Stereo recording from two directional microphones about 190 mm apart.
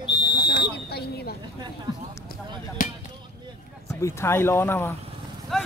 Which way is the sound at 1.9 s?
20° right (ahead or behind).